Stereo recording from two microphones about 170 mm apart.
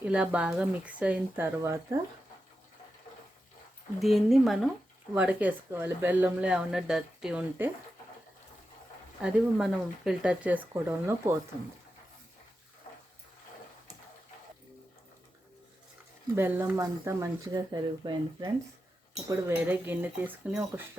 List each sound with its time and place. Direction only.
0.0 s speech: 5° right (ahead or behind)
4.0 s speech: centre (ahead or behind)
9.2 s speech: 5° right (ahead or behind)
16.3 s speech: 15° right (ahead or behind)
19.5 s speech: 10° right (ahead or behind)